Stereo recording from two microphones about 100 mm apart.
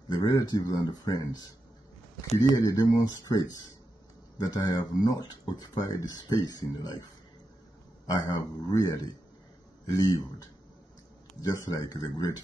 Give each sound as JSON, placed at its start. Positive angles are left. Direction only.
{"t": 0.1, "sound": "speech", "side_deg": 40}
{"t": 8.1, "sound": "speech", "side_deg": 40}